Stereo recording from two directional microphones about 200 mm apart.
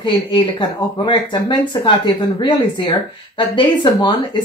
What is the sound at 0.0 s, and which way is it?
Speech, 25° left (ahead or behind).